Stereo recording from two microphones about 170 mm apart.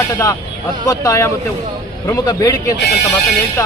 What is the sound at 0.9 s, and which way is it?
A man's voice, 20° left (ahead or behind).